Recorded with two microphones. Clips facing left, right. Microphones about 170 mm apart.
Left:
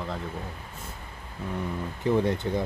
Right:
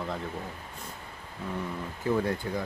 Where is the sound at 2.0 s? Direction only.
20° left (ahead or behind).